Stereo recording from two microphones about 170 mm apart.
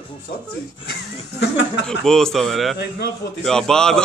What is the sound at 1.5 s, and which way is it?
Speech, 90° left.